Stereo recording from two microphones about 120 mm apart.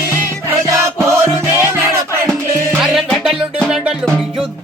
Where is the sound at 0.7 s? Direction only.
25° right (ahead or behind).